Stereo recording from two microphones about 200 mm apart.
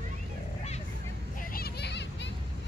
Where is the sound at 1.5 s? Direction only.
55° left (ahead or behind).